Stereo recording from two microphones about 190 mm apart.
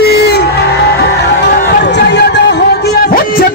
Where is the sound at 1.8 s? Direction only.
65° left (ahead or behind).